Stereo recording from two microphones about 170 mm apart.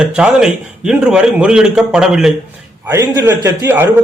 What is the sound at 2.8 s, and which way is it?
Speech, 20° right (ahead or behind).